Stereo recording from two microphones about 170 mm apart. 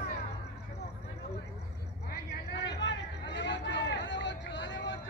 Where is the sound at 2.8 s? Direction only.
90° left.